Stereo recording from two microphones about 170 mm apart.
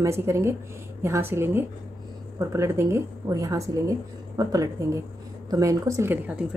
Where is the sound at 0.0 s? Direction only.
15° right (ahead or behind).